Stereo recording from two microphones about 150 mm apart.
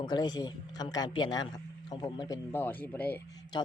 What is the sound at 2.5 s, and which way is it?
Speech, 10° left (ahead or behind).